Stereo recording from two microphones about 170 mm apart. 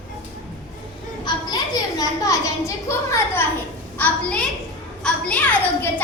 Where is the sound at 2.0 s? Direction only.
20° left (ahead or behind).